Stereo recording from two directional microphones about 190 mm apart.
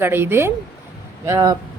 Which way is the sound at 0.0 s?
10° right (ahead or behind).